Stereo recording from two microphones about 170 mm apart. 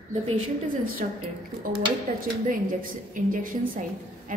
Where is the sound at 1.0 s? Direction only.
50° right (ahead or behind).